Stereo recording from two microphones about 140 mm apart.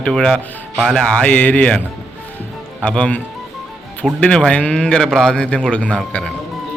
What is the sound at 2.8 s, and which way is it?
Speech, 5° left (ahead or behind).